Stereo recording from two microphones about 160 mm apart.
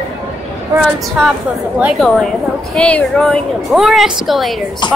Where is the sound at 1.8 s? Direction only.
Centre (ahead or behind).